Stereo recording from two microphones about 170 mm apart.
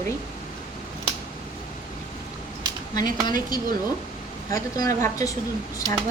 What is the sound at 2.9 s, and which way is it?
Speech, 25° left (ahead or behind).